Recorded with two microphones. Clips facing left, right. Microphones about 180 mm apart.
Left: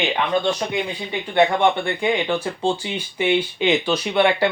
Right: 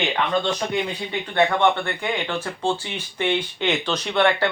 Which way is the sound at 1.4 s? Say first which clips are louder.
Left 2 dB; 15° left (ahead or behind).